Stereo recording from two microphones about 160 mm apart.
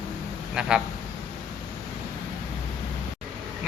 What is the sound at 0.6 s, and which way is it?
Speech, 5° right (ahead or behind).